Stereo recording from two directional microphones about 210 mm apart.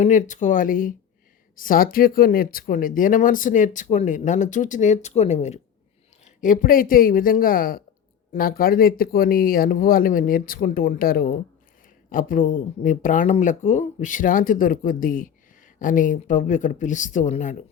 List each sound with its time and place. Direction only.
0.0 s speech: 35° left (ahead or behind)